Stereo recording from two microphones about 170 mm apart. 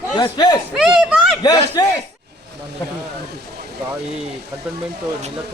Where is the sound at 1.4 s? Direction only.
25° left (ahead or behind).